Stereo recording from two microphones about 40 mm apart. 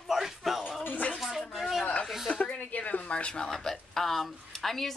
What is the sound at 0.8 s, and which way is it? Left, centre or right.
Speech, left.